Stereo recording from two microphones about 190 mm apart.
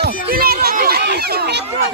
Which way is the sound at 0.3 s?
55° right (ahead or behind).